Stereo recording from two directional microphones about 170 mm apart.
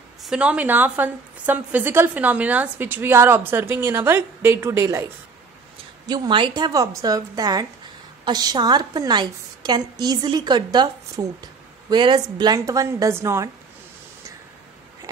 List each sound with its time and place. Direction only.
0.2 s a woman's voice: 5° right (ahead or behind)
6.0 s a woman's voice: 25° right (ahead or behind)